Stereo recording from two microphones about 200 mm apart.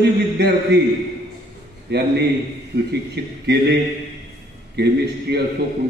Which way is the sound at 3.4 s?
55° right (ahead or behind).